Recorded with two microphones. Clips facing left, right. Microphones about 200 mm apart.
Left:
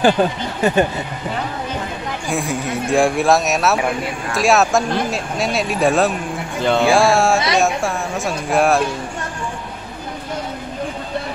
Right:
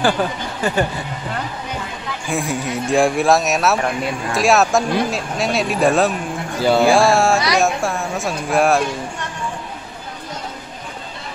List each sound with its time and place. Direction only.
0.0 s speech: 20° left (ahead or behind)
2.2 s speech: centre (ahead or behind)